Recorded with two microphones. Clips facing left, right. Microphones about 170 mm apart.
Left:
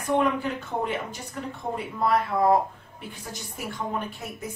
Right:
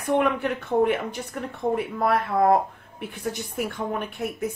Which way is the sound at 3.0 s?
60° right (ahead or behind).